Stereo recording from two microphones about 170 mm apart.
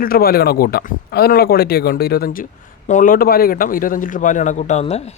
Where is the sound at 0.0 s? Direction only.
60° left (ahead or behind).